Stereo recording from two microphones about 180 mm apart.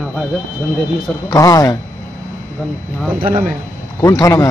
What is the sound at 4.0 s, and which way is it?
Speech, 15° left (ahead or behind).